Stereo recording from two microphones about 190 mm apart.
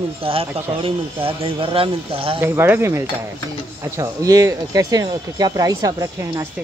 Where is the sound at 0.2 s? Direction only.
30° right (ahead or behind).